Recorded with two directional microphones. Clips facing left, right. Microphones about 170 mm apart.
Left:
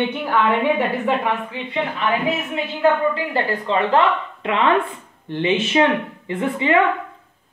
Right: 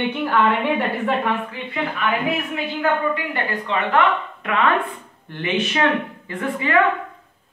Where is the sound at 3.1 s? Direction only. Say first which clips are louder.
Left 3 dB; 30° left (ahead or behind).